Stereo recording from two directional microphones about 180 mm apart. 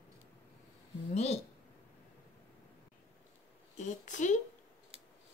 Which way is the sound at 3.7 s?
45° left (ahead or behind).